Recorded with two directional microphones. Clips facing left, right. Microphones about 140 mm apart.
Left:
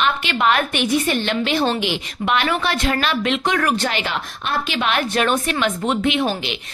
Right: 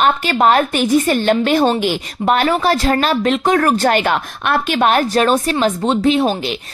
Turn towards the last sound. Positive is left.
turn(degrees=-40)  # may be behind; listen again after turning